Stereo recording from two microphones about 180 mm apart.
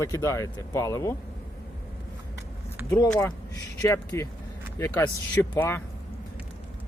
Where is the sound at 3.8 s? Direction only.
15° left (ahead or behind).